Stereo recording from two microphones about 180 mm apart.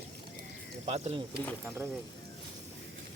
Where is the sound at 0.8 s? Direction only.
35° right (ahead or behind).